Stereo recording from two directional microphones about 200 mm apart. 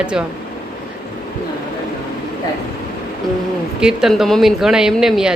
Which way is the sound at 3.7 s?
5° right (ahead or behind).